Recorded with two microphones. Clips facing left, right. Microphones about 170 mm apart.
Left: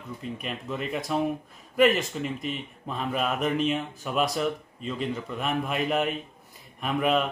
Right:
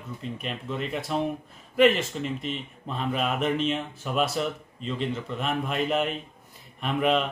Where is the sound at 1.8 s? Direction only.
40° left (ahead or behind).